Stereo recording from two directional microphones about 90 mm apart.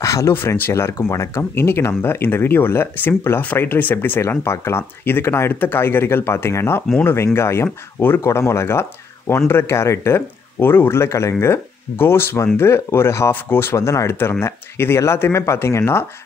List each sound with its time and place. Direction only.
0.0 s speech: 35° left (ahead or behind)